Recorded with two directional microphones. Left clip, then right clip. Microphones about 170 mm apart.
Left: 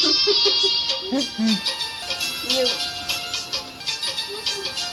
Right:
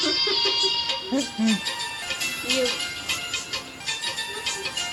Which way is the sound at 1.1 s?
Centre (ahead or behind).